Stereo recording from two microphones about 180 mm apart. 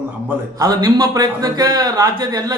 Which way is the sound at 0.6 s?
20° right (ahead or behind).